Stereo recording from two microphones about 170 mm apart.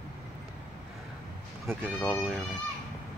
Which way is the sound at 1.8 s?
5° left (ahead or behind).